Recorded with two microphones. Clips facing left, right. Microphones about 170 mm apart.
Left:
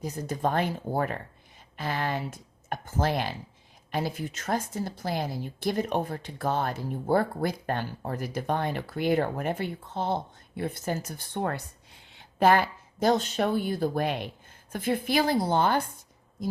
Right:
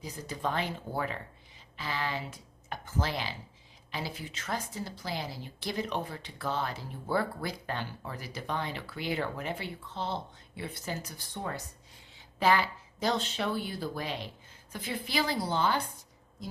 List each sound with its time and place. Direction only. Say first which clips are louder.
0.0 s a woman's voice: left 6 dB; 50° left (ahead or behind)